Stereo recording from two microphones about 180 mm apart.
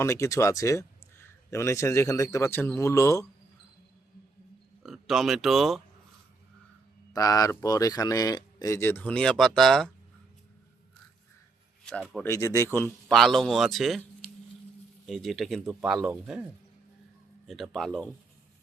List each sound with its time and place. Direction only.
0.0 s speech: 15° left (ahead or behind)
4.8 s speech: centre (ahead or behind)
7.1 s speech: 20° left (ahead or behind); by 9.9 s centre (ahead or behind)
11.9 s speech: 5° left (ahead or behind)
13.1 s speech: centre (ahead or behind)
15.0 s speech: centre (ahead or behind)
17.4 s speech: centre (ahead or behind)